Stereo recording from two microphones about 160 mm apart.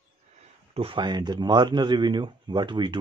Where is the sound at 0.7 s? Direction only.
30° right (ahead or behind).